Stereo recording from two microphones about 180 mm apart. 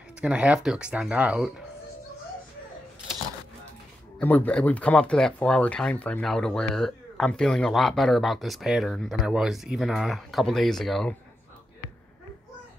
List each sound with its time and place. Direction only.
0.2 s speech: 5° right (ahead or behind)
4.2 s speech: 10° left (ahead or behind)